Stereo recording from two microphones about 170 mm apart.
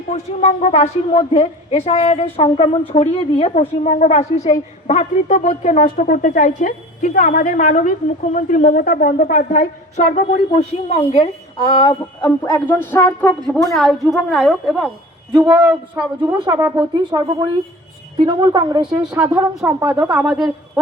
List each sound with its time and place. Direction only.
0.1 s a woman's voice: 40° left (ahead or behind)
11.5 s music: 25° left (ahead or behind)
12.5 s speech: 10° left (ahead or behind)
13.7 s a woman's voice: centre (ahead or behind)
15.3 s speech: 10° right (ahead or behind)
16.2 s speech: 25° right (ahead or behind)
18.9 s speech: 5° right (ahead or behind)